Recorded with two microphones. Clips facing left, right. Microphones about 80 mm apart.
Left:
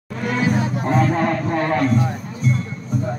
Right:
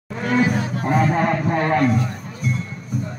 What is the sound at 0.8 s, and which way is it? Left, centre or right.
Speech, centre.